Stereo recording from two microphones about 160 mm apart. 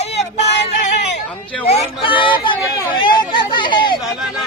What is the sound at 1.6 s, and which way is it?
Speech, 35° left (ahead or behind).